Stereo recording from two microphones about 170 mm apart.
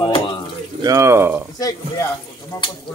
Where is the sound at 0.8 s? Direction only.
20° right (ahead or behind).